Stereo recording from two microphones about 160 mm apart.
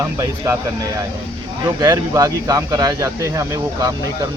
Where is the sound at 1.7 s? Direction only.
25° right (ahead or behind).